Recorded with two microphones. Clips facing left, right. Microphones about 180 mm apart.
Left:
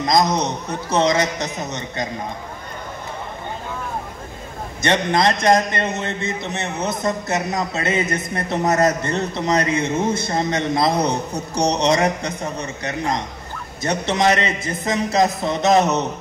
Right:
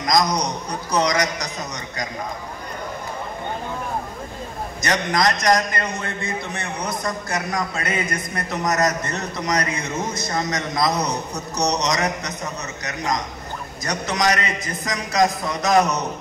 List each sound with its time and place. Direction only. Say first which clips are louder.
0.0 s a man's voice: left 2 dB; 25° left (ahead or behind)
4.8 s a man's voice: left 3 dB; 25° left (ahead or behind)